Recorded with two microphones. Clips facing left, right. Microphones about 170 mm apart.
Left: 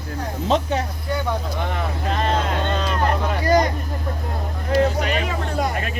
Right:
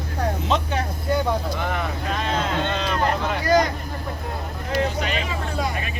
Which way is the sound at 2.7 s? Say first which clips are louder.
Left 2 dB; 45° left (ahead or behind).